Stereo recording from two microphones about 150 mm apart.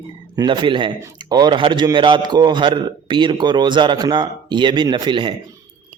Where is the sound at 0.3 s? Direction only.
30° right (ahead or behind).